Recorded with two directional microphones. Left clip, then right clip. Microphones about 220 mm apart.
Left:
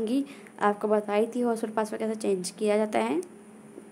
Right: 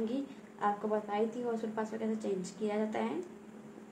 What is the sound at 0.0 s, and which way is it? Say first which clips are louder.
A woman's voice: left 8 dB; 45° left (ahead or behind).